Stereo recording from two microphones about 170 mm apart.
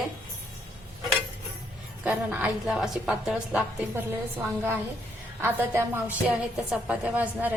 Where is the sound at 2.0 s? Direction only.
5° right (ahead or behind).